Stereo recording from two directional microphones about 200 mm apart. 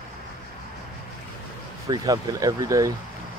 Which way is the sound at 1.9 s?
20° right (ahead or behind).